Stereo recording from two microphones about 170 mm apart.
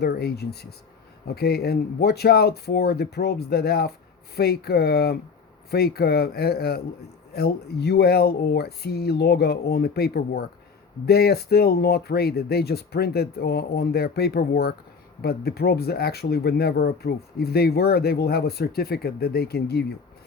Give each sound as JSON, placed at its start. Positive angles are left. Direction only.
{"t": 0.0, "sound": "speech", "side_deg": 70}